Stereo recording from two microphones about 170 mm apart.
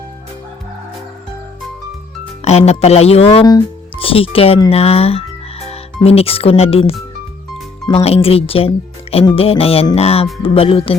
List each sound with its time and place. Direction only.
2.4 s music: 40° left (ahead or behind)
3.4 s speech: 30° left (ahead or behind)
7.9 s music: 35° left (ahead or behind)